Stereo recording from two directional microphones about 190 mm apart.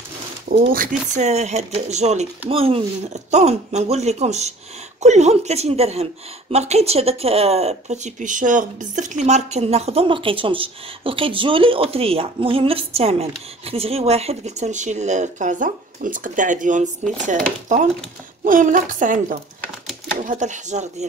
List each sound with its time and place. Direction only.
0.7 s a woman's voice: 40° right (ahead or behind)